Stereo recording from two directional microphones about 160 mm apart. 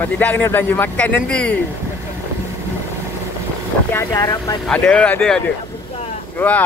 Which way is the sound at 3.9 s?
20° left (ahead or behind).